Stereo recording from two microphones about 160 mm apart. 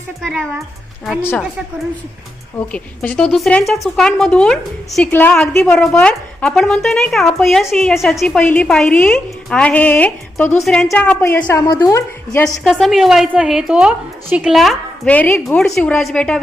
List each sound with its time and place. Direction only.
0.2 s a woman's voice: centre (ahead or behind)
2.6 s a woman's voice: 10° left (ahead or behind)
11.5 s a woman's voice: 25° left (ahead or behind)
12.6 s a woman's voice: centre (ahead or behind)